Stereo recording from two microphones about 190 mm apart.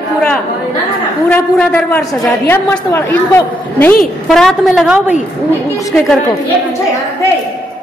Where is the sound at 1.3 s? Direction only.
5° left (ahead or behind).